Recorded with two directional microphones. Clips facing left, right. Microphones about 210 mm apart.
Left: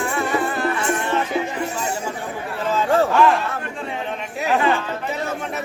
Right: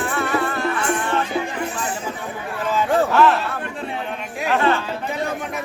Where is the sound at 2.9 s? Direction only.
Centre (ahead or behind).